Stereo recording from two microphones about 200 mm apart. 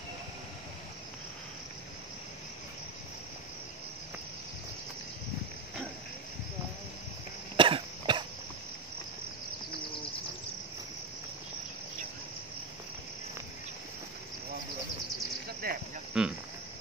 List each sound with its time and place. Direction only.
7.5 s cough: 25° right (ahead or behind)
15.6 s cricket: 45° right (ahead or behind)
16.1 s cricket: 5° right (ahead or behind)